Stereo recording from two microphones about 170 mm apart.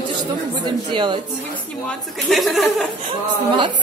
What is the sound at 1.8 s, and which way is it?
A woman's voice, centre (ahead or behind).